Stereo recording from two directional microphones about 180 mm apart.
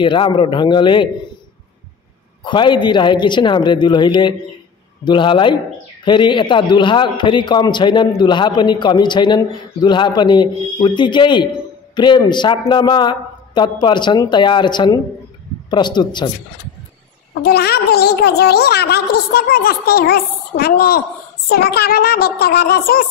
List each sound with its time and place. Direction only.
0.0 s a man's voice: 25° left (ahead or behind)
2.4 s a man's voice: 25° left (ahead or behind)
17.3 s a woman's voice: 60° left (ahead or behind)